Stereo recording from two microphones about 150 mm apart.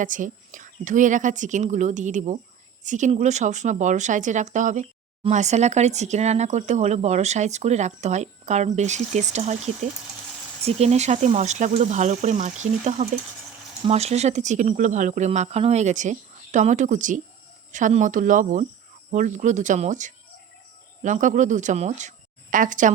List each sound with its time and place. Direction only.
0.0 s speech: 60° right (ahead or behind)
10.7 s speech: 45° right (ahead or behind)